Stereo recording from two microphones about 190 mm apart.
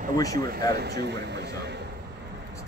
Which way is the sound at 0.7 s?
60° right (ahead or behind).